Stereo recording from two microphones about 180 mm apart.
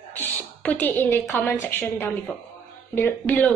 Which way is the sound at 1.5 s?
10° left (ahead or behind).